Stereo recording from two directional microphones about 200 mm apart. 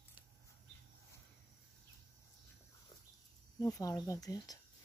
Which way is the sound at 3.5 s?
15° left (ahead or behind).